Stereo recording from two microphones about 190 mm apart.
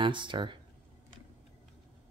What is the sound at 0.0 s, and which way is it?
Speech, 25° right (ahead or behind).